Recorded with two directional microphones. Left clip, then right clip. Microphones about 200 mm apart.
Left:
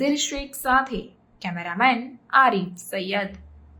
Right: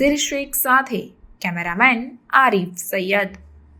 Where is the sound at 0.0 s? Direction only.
15° right (ahead or behind).